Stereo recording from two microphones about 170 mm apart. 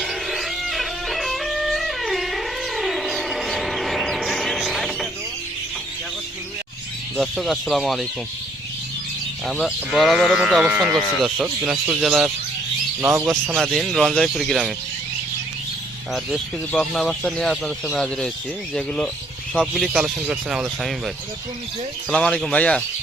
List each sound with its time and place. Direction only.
0.0 s music: centre (ahead or behind)
7.2 s speech: centre (ahead or behind)
9.5 s speech: centre (ahead or behind)
13.0 s speech: 15° right (ahead or behind)
13.6 s speech: centre (ahead or behind)
16.1 s speech: centre (ahead or behind)
22.1 s speech: 5° left (ahead or behind)